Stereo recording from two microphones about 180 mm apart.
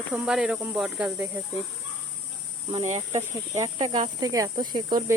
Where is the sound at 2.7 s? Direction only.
40° right (ahead or behind).